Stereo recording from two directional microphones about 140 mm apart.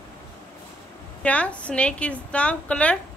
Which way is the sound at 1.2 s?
10° left (ahead or behind).